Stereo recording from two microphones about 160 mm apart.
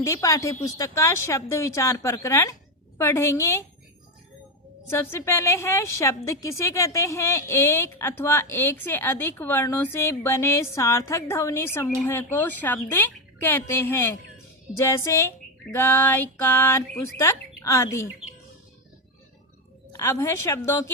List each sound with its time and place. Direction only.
0.0 s a woman's voice: 20° left (ahead or behind)
4.9 s a woman's voice: 15° left (ahead or behind)
20.0 s speech: 20° left (ahead or behind)